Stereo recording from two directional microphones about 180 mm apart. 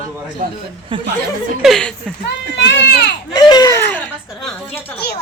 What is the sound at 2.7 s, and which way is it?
Speech, 70° left (ahead or behind).